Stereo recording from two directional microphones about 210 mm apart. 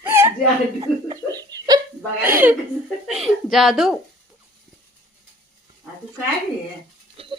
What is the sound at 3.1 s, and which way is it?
Speech, centre (ahead or behind).